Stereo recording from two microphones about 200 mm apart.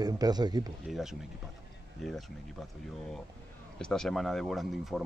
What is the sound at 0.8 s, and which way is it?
Speech, centre (ahead or behind).